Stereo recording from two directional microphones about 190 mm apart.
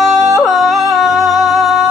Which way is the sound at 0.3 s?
Centre (ahead or behind).